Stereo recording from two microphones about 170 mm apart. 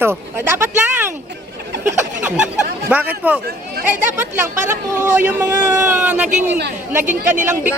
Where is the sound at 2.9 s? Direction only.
10° right (ahead or behind).